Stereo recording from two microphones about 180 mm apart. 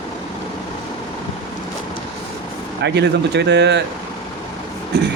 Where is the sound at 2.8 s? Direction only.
70° right (ahead or behind).